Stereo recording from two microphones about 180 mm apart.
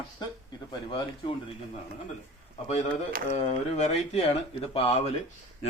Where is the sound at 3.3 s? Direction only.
40° left (ahead or behind).